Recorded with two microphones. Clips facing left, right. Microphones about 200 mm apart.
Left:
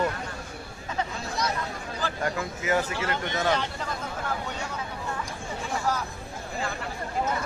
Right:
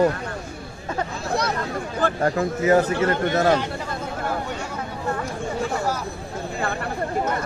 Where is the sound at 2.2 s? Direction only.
40° right (ahead or behind).